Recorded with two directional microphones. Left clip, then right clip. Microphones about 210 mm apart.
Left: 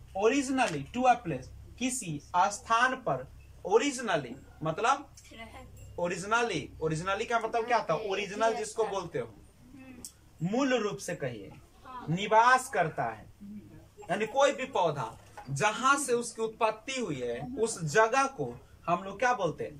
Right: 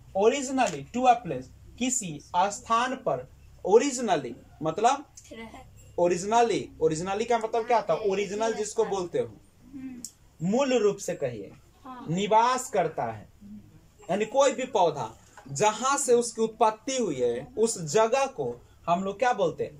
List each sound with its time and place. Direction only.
0.2 s speech: 20° right (ahead or behind)
5.9 s speech: 20° right (ahead or behind)
10.4 s speech: 15° right (ahead or behind)